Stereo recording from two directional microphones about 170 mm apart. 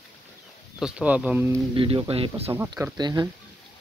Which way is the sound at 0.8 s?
5° right (ahead or behind).